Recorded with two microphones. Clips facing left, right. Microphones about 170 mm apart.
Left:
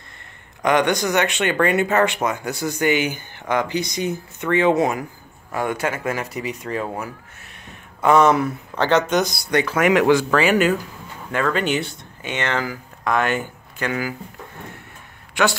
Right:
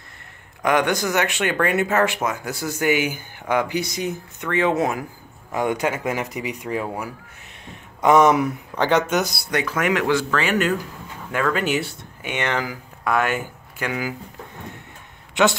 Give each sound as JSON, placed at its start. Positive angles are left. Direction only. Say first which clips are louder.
{"t": 0.6, "sound": "speech", "louder": "left 2 dB", "side_deg": -5}
{"t": 5.5, "sound": "speech", "louder": "right 1 dB", "side_deg": -15}
{"t": 9.9, "sound": "speech", "louder": "left 5 dB", "side_deg": 15}
{"t": 11.3, "sound": "speech", "louder": "left 1 dB", "side_deg": -5}
{"t": 15.4, "sound": "a man's voice", "louder": "right 2 dB", "side_deg": -20}